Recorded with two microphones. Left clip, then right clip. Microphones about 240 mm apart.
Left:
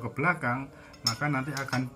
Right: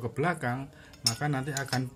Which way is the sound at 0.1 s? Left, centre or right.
Right.